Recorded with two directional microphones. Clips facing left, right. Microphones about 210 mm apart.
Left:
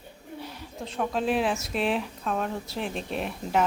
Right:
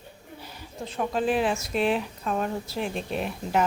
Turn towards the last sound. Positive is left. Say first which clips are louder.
# right 1 dB
turn(degrees=0)  # may be behind; listen again after turning